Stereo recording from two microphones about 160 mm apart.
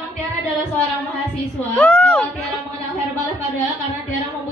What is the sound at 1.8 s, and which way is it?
Music, 10° left (ahead or behind).